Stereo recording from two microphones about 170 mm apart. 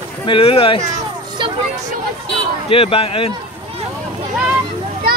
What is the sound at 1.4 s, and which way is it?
Speech, 25° right (ahead or behind).